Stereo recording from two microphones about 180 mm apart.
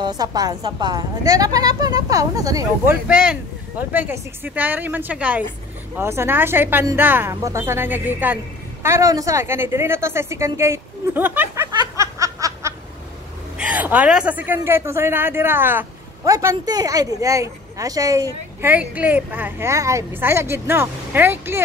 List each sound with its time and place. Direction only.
0.0 s a woman's voice: 20° right (ahead or behind)
3.1 s a woman's voice: 5° right (ahead or behind)